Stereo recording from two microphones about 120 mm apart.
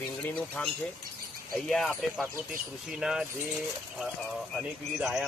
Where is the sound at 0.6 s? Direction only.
10° left (ahead or behind).